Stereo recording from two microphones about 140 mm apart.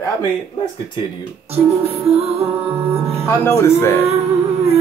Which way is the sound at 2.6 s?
20° right (ahead or behind).